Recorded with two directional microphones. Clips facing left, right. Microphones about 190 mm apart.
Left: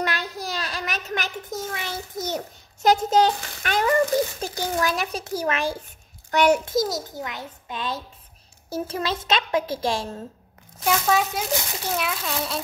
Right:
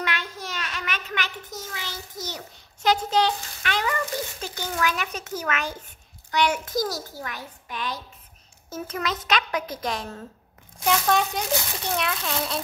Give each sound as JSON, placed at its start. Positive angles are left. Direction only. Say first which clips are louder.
{"t": 0.0, "sound": "a sound", "louder": "left 3 dB", "side_deg": 40}
{"t": 4.4, "sound": "a child's voice", "louder": "left 3 dB", "side_deg": 40}
{"t": 6.3, "sound": "a child's voice", "louder": "left 5 dB", "side_deg": 45}
{"t": 6.6, "sound": "a woman's voice", "louder": "left 3 dB", "side_deg": 25}
{"t": 10.8, "sound": "speech", "louder": "left 1 dB", "side_deg": 5}